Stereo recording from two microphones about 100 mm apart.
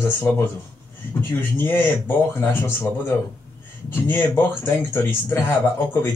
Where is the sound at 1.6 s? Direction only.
25° left (ahead or behind).